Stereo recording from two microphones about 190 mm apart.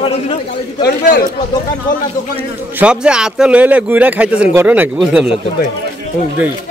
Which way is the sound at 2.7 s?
5° right (ahead or behind).